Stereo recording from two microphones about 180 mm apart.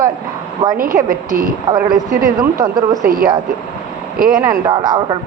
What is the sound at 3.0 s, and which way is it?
A woman's voice, 50° right (ahead or behind).